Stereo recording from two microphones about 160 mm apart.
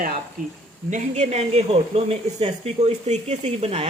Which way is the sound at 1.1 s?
40° right (ahead or behind).